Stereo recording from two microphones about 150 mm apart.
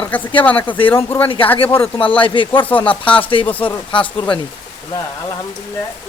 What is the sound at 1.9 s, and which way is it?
Speech, 35° left (ahead or behind).